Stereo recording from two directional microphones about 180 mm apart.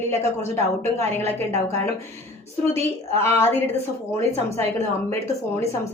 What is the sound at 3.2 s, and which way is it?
Speech, 15° left (ahead or behind).